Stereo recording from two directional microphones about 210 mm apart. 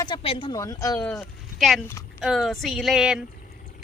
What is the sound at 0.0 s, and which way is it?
A woman's voice, 25° left (ahead or behind).